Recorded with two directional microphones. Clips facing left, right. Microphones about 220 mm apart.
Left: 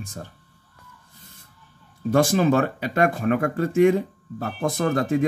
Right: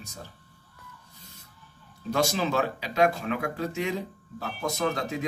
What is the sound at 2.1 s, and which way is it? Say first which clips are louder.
Speech: left 7 dB; 50° left (ahead or behind).